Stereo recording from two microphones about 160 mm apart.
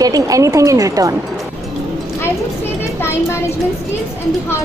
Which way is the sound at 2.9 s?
15° left (ahead or behind).